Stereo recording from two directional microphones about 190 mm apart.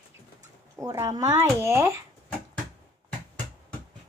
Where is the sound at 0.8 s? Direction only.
15° right (ahead or behind).